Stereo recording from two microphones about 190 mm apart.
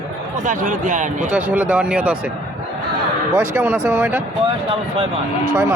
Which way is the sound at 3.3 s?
15° right (ahead or behind).